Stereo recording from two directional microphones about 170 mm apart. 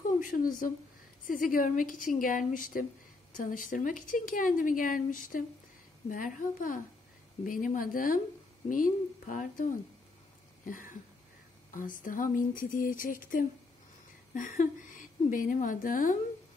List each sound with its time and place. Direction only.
0.2 s speech: 50° left (ahead or behind)
10.6 s a sound: 50° left (ahead or behind)
11.7 s speech: 50° left (ahead or behind)